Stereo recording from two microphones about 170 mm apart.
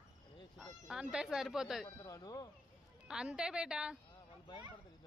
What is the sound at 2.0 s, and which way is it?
Speech, 20° left (ahead or behind).